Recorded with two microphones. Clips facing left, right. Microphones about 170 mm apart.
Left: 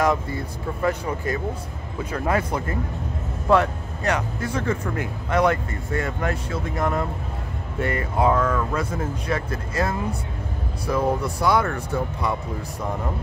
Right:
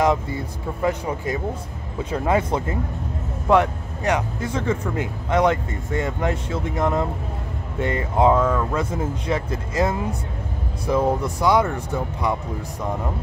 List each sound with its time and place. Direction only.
0.0 s speech: 20° right (ahead or behind)